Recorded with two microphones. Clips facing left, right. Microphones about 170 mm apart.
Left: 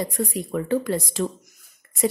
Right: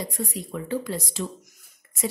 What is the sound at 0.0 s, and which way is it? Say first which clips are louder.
A woman's voice: left 5 dB; 55° left (ahead or behind).